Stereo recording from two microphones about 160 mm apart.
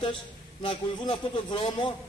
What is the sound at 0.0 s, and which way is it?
A man's voice, 30° left (ahead or behind).